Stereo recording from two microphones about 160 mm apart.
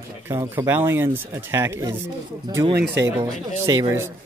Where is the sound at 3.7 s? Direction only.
20° right (ahead or behind).